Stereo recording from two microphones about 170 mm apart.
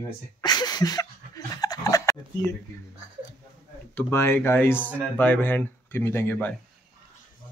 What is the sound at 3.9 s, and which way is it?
Speech, 15° left (ahead or behind).